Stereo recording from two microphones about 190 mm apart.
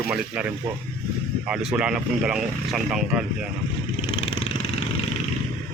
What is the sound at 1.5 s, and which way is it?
Speech, 5° right (ahead or behind).